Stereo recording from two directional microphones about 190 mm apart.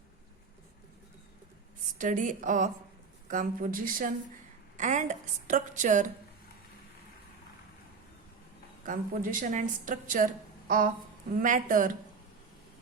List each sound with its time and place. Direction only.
2.0 s a woman's voice: 40° right (ahead or behind)
8.9 s a woman's voice: 45° right (ahead or behind)
11.3 s a woman's voice: 45° right (ahead or behind)